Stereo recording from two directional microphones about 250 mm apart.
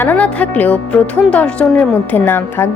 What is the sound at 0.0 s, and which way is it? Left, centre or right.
A woman's voice, centre.